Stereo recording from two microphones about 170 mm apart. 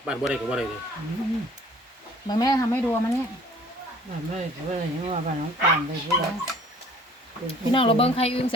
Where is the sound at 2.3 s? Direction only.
20° left (ahead or behind).